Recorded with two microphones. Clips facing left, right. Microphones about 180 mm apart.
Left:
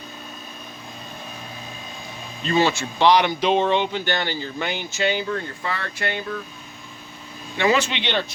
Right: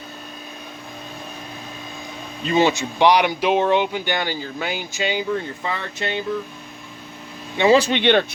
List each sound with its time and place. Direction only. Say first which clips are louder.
2.5 s speech: right 2 dB; 20° right (ahead or behind)
7.5 s speech: right 5 dB; 25° right (ahead or behind)
7.8 s speech: right 7 dB; 45° right (ahead or behind)